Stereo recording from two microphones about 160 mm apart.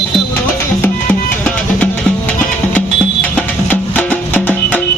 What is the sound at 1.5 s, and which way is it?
Music, 10° left (ahead or behind).